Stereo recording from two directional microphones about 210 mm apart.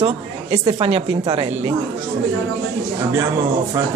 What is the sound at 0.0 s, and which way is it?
A woman's voice, 25° right (ahead or behind).